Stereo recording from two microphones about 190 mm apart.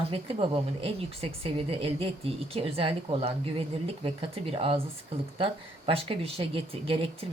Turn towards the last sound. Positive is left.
turn(degrees=-30)  # may be behind; listen again after turning